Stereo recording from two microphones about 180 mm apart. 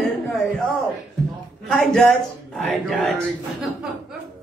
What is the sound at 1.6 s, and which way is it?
A man's voice, centre (ahead or behind).